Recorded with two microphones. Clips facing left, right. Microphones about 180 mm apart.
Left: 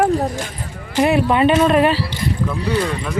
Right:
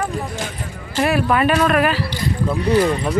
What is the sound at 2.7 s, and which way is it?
Speech, 30° right (ahead or behind).